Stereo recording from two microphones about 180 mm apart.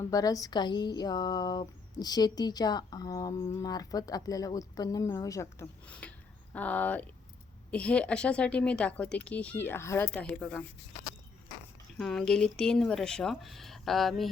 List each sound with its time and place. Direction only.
0.0 s speech: 20° left (ahead or behind)
11.9 s speech: centre (ahead or behind)